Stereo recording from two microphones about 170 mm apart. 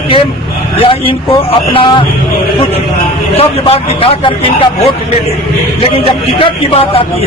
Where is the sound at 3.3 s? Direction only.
35° left (ahead or behind).